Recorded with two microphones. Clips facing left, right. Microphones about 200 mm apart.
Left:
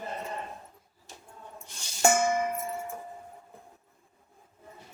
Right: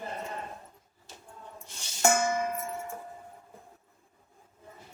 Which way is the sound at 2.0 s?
20° left (ahead or behind).